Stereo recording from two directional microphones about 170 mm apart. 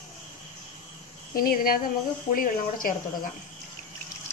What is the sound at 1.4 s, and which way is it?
Speech, 60° left (ahead or behind).